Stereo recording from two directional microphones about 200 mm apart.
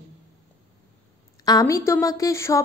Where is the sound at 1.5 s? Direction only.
15° left (ahead or behind).